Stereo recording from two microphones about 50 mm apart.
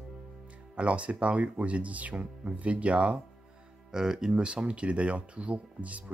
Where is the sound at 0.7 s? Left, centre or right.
Right.